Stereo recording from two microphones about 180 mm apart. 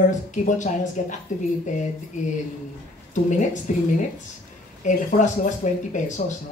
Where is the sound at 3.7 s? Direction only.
45° left (ahead or behind).